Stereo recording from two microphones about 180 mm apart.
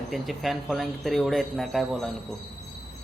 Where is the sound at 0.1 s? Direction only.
Centre (ahead or behind).